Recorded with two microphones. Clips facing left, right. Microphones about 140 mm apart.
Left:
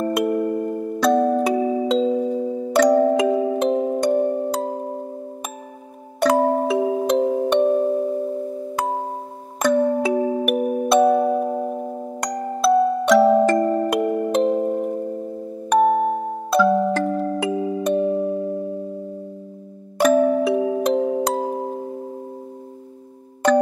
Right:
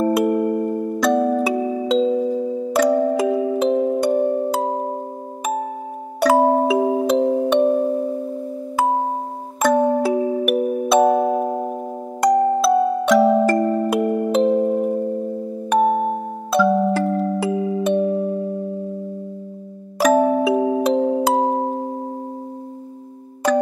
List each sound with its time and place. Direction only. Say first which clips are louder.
0.1 s music: right 3 dB; 5° right (ahead or behind)
6.1 s music: right 2 dB; 5° right (ahead or behind)
9.6 s music: right 1 dB; 5° right (ahead or behind)
20.0 s music: even; centre (ahead or behind)